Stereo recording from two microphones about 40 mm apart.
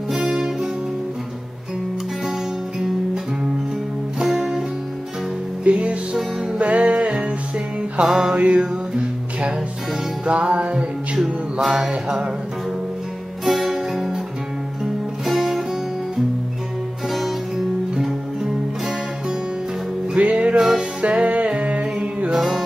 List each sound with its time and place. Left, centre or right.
0.2 s guitar: centre
4.2 s music: centre
5.6 s music: right
8.1 s music: centre
8.4 s music: right
11.6 s music: centre
11.9 s music: right
13.5 s music: centre
15.2 s music: centre
17.1 s music: centre
20.2 s music: right
20.5 s music: centre
21.0 s music: right
22.3 s music: centre